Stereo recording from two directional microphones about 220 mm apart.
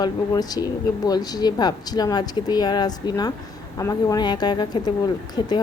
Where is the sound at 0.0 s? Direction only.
15° left (ahead or behind).